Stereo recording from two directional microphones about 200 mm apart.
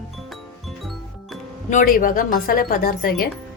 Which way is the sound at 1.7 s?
45° left (ahead or behind).